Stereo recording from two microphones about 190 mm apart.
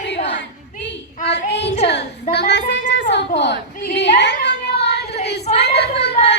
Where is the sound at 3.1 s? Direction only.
65° left (ahead or behind).